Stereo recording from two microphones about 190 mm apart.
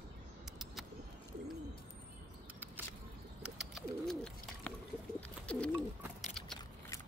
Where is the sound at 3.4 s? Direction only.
Centre (ahead or behind).